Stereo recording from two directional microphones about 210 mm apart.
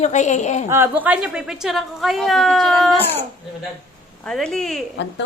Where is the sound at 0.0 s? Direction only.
35° left (ahead or behind).